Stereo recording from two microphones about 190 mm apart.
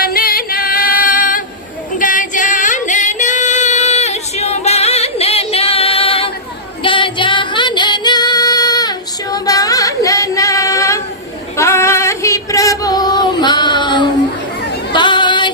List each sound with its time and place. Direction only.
0.0 s female singing: 50° left (ahead or behind)
2.0 s music: 45° left (ahead or behind); by 11.0 s 15° left (ahead or behind)
11.5 s female singing: 15° left (ahead or behind)